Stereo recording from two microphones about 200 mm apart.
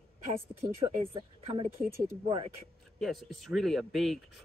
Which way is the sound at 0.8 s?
30° right (ahead or behind).